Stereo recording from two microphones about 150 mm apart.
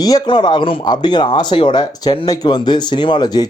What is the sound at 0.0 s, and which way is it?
Speech, 25° left (ahead or behind).